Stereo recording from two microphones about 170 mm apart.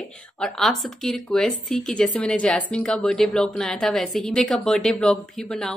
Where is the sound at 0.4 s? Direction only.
Centre (ahead or behind).